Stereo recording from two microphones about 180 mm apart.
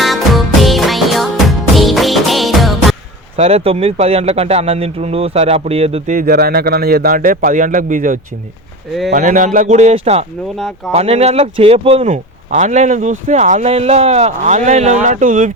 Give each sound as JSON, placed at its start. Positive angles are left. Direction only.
{"t": 0.0, "sound": "music", "side_deg": 0}
{"t": 3.3, "sound": "speech", "side_deg": -35}
{"t": 6.1, "sound": "a man's voice", "side_deg": -60}